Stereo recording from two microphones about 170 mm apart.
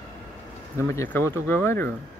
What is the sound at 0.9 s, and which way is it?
Speech, 15° left (ahead or behind).